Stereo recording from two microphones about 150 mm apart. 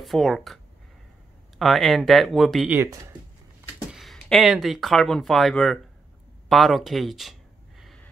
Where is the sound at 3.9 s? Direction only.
5° left (ahead or behind).